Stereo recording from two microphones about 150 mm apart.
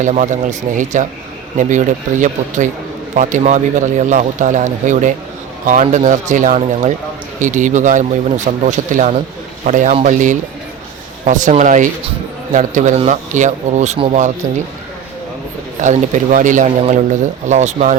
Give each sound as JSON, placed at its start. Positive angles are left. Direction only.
{"t": 0.0, "sound": "speech", "side_deg": -55}
{"t": 15.8, "sound": "speech", "side_deg": -55}